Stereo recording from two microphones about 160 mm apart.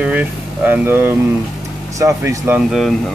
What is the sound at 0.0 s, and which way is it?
Vehicle, 10° right (ahead or behind).